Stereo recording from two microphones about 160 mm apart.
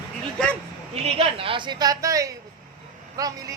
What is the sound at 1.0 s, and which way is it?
Speech, 35° right (ahead or behind).